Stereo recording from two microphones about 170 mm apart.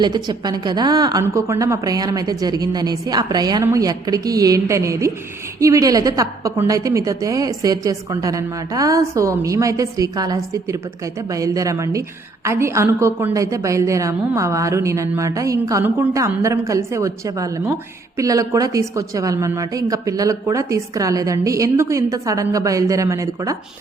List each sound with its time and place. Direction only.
0.0 s a woman's voice: 25° right (ahead or behind)